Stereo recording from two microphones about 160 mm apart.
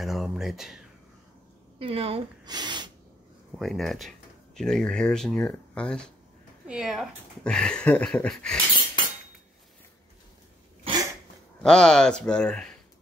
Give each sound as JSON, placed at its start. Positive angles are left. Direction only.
{"t": 0.0, "sound": "speech", "side_deg": 0}
{"t": 1.8, "sound": "speech", "side_deg": -35}
{"t": 3.5, "sound": "speech", "side_deg": 0}
{"t": 10.8, "sound": "cough", "side_deg": -25}
{"t": 11.6, "sound": "speech", "side_deg": 5}